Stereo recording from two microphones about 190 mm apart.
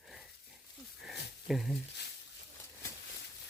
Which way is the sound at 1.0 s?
Centre (ahead or behind).